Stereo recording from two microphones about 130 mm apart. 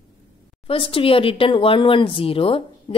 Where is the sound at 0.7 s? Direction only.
45° left (ahead or behind).